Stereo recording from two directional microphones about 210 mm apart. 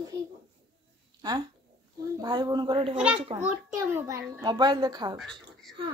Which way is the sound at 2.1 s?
20° right (ahead or behind).